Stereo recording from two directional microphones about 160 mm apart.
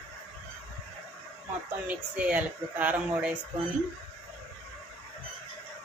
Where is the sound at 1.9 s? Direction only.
10° right (ahead or behind).